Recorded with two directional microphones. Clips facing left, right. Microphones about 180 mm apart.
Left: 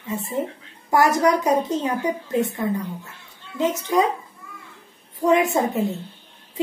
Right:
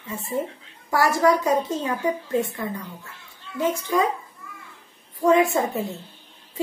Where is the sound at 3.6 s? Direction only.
20° left (ahead or behind).